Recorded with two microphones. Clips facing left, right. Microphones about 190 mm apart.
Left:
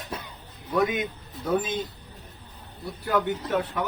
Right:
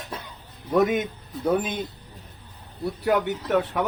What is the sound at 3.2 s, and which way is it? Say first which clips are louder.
Speech: right 3 dB; 70° right (ahead or behind).